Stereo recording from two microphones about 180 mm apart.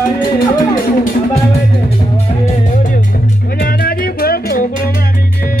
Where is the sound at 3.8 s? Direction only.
55° left (ahead or behind).